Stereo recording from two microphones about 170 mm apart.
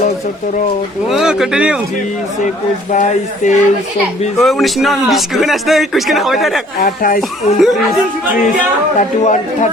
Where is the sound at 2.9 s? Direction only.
45° left (ahead or behind).